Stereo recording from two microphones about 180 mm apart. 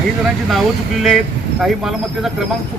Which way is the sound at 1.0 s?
Centre (ahead or behind).